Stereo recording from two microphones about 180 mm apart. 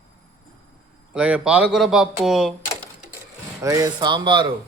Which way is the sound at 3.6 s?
20° right (ahead or behind).